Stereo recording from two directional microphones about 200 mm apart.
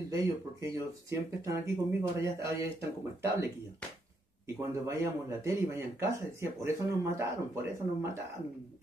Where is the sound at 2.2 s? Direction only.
15° right (ahead or behind).